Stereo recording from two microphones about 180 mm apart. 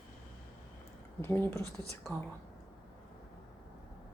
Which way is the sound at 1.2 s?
10° left (ahead or behind).